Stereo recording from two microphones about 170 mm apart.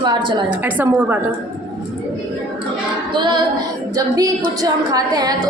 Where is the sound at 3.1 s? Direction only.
25° right (ahead or behind).